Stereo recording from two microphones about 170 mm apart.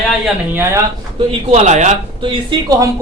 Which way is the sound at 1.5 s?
40° right (ahead or behind).